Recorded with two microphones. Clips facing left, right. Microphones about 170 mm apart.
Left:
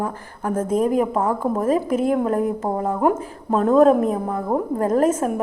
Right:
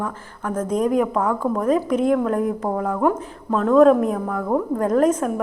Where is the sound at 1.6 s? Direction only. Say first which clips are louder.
Right 1 dB; 5° left (ahead or behind).